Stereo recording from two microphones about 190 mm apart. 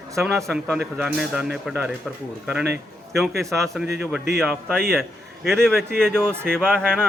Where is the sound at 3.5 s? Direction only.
Centre (ahead or behind).